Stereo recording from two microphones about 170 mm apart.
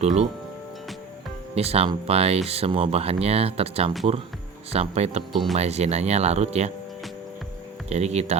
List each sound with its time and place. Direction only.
0.0 s speech: 40° right (ahead or behind)
1.5 s speech: 35° right (ahead or behind)
5.3 s speech: centre (ahead or behind)
5.5 s speech: 40° right (ahead or behind)
7.9 s speech: 40° right (ahead or behind)